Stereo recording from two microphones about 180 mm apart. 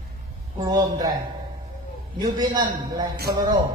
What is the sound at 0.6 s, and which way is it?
Speech, 20° right (ahead or behind).